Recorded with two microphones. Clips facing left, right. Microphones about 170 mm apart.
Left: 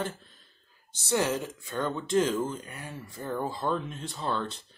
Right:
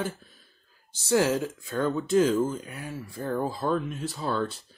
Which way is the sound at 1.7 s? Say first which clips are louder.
Right 4 dB; 5° right (ahead or behind).